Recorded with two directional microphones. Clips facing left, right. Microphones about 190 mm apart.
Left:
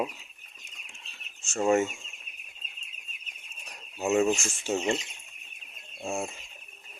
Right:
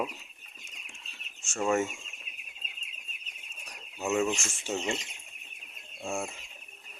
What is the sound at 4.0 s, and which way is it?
Speech, 25° left (ahead or behind).